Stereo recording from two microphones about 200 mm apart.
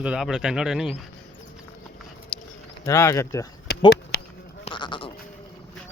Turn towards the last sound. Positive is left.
turn(degrees=25)  # may be behind; listen again after turning